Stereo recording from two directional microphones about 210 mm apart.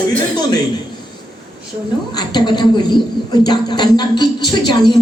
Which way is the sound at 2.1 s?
20° left (ahead or behind).